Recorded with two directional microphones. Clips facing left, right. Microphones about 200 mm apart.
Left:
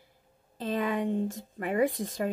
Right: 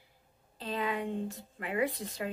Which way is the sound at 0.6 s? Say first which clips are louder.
Left 5 dB; 45° left (ahead or behind).